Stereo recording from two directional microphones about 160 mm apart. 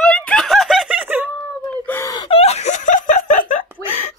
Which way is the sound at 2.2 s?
40° left (ahead or behind).